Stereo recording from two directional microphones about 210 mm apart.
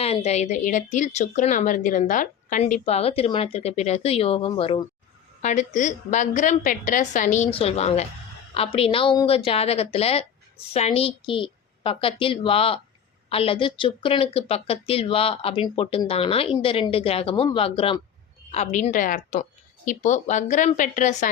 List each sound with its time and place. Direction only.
0.0 s a woman's voice: 30° left (ahead or behind)